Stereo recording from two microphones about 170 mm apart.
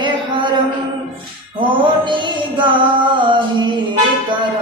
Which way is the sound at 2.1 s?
25° right (ahead or behind).